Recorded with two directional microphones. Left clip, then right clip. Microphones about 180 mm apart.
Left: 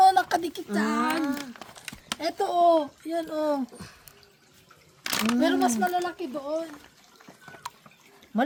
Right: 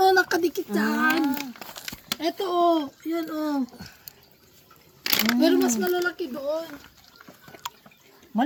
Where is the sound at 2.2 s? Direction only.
20° left (ahead or behind).